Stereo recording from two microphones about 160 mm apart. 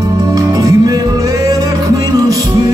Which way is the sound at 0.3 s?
20° right (ahead or behind).